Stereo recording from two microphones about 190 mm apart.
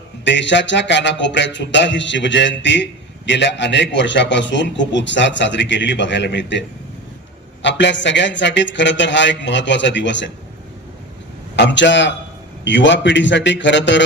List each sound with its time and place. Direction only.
0.3 s music: 70° left (ahead or behind)
11.5 s music: 70° left (ahead or behind)